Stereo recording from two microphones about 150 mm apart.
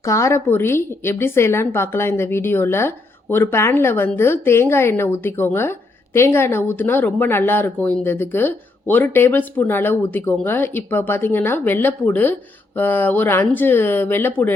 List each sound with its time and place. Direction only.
0.0 s speech: 20° left (ahead or behind)